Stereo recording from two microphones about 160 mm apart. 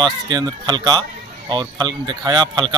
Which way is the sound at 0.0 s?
25° right (ahead or behind).